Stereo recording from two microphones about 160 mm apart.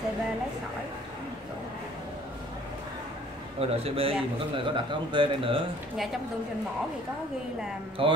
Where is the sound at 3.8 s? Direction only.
35° right (ahead or behind).